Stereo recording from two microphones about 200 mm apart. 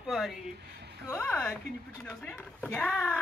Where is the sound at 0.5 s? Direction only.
55° right (ahead or behind).